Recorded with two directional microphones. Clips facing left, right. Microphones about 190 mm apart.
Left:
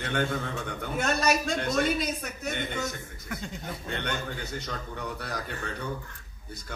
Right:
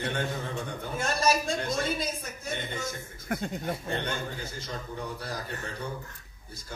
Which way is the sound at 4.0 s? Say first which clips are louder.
Left 1 dB; 65° left (ahead or behind).